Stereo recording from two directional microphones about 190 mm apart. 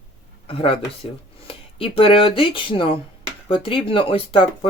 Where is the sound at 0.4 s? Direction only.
30° left (ahead or behind).